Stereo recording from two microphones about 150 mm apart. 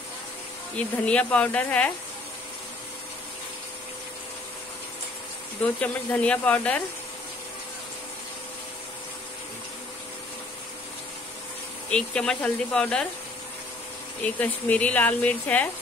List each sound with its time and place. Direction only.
0.7 s speech: 10° left (ahead or behind)
5.6 s speech: 10° left (ahead or behind)
11.9 s speech: 5° left (ahead or behind)
14.2 s speech: 10° left (ahead or behind)